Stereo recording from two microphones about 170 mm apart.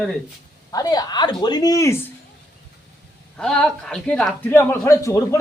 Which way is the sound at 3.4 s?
5° left (ahead or behind).